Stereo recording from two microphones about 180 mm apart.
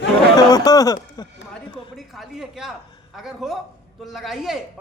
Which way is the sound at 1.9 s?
Centre (ahead or behind).